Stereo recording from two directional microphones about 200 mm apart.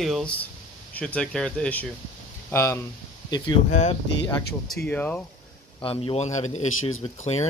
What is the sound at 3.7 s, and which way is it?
Speech, 35° left (ahead or behind).